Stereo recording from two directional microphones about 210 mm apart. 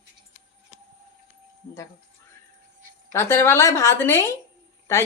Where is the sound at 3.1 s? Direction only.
15° left (ahead or behind).